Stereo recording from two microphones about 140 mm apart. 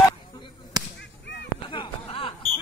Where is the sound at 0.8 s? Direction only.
30° right (ahead or behind).